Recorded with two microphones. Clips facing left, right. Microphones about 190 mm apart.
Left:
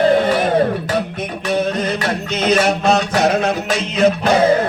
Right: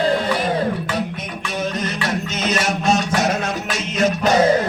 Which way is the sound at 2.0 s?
60° left (ahead or behind).